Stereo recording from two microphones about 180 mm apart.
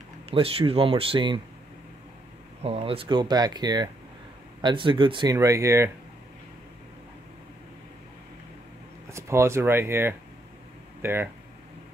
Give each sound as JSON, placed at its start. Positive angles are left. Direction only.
{"t": 0.3, "sound": "speech", "side_deg": -30}
{"t": 2.6, "sound": "speech", "side_deg": -35}
{"t": 9.1, "sound": "speech", "side_deg": -15}